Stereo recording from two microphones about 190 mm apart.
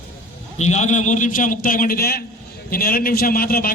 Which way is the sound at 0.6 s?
35° left (ahead or behind).